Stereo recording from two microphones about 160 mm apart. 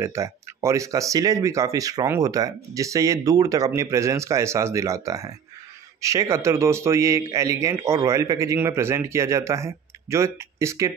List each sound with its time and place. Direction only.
0.0 s a man's voice: 20° right (ahead or behind)